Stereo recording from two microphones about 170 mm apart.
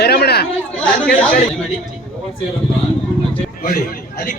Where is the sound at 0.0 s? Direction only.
70° left (ahead or behind).